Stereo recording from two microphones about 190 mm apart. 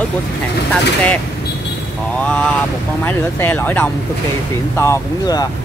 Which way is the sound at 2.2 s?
5° left (ahead or behind).